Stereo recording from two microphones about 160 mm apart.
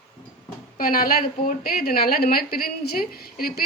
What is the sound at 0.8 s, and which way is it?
A woman's voice, 65° left (ahead or behind).